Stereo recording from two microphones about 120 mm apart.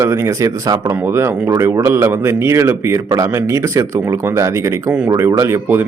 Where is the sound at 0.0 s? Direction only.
25° right (ahead or behind).